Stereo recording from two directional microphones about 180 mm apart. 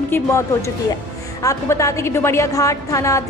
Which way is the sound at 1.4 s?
20° left (ahead or behind).